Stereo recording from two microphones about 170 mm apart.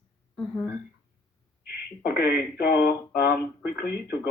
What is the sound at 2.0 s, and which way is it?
Speech, 65° left (ahead or behind).